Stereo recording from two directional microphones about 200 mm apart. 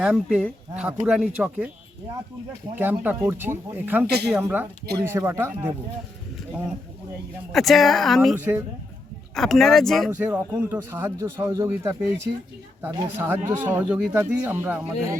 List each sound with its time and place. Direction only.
0.0 s speech: 5° right (ahead or behind)
2.7 s speech: 10° right (ahead or behind)
4.0 s speech: 55° right (ahead or behind)
4.4 s speech: 10° right (ahead or behind)
7.5 s speech: centre (ahead or behind)
9.3 s speech: centre (ahead or behind)
10.1 s speech: 10° right (ahead or behind)